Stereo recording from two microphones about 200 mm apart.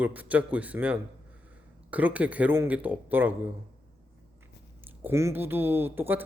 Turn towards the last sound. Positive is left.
turn(degrees=-10)  # may be behind; listen again after turning